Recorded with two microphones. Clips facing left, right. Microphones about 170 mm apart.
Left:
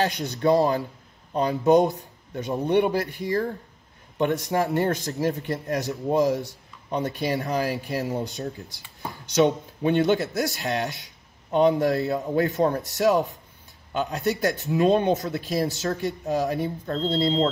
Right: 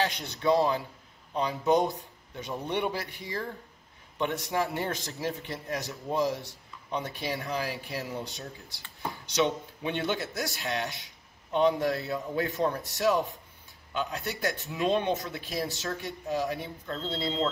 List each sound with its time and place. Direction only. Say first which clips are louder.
0.0 s speech: left 5 dB; 45° left (ahead or behind)
4.5 s speech: left 7 dB; 45° left (ahead or behind)